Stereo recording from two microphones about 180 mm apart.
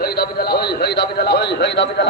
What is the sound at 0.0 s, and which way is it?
A man's voice, 60° left (ahead or behind).